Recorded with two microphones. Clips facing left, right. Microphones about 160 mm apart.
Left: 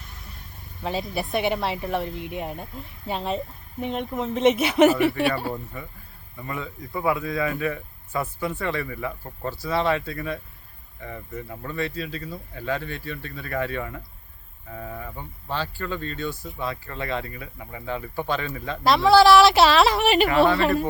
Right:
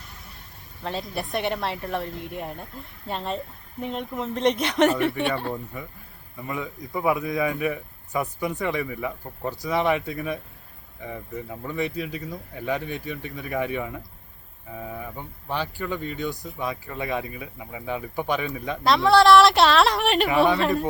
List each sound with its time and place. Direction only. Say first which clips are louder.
0.8 s a woman's voice: left 2 dB; centre (ahead or behind)
5.7 s speech: right 1 dB; 10° right (ahead or behind)
18.8 s a woman's voice: left 2 dB; centre (ahead or behind)